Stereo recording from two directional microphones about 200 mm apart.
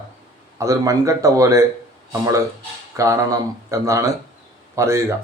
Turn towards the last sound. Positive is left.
turn(degrees=-15)  # may be behind; listen again after turning